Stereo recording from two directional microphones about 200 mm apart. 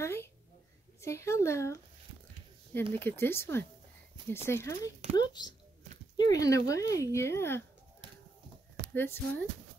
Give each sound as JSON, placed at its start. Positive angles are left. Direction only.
{"t": 0.0, "sound": "a sound", "side_deg": 10}
{"t": 1.0, "sound": "speech", "side_deg": 15}
{"t": 8.9, "sound": "speech", "side_deg": 10}